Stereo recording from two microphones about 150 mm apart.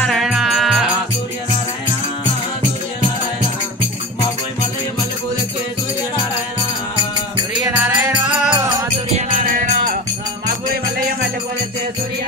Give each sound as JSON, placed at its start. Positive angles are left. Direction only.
{"t": 0.0, "sound": "music", "side_deg": 0}
{"t": 7.6, "sound": "music", "side_deg": -10}
{"t": 9.1, "sound": "music", "side_deg": -60}